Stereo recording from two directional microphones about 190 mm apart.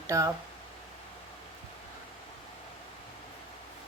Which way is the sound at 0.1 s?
15° right (ahead or behind).